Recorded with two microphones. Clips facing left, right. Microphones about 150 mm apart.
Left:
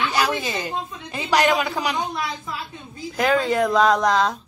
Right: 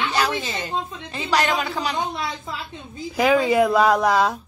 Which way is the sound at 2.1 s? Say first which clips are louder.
Left 1 dB; 25° right (ahead or behind).